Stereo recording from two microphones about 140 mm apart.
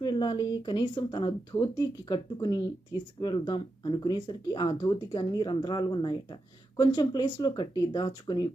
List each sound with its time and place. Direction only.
0.0 s speech: 30° left (ahead or behind)